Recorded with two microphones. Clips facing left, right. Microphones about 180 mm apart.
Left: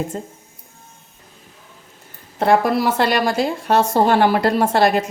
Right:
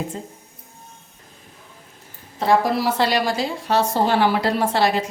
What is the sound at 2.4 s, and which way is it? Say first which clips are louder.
A woman's voice: left 3 dB; 55° left (ahead or behind).